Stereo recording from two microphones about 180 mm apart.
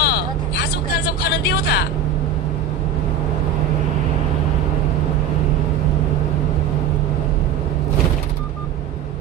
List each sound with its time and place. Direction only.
0.0 s vehicle: 60° left (ahead or behind)